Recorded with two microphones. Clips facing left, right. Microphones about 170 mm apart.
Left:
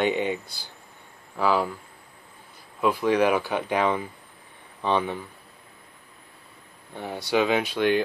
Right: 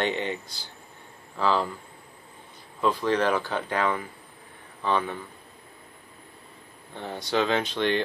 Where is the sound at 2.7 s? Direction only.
10° left (ahead or behind).